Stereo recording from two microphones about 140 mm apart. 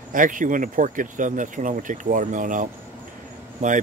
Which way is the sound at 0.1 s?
70° right (ahead or behind).